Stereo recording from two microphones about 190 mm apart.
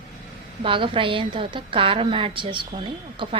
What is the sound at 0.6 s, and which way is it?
A woman's voice, 25° right (ahead or behind).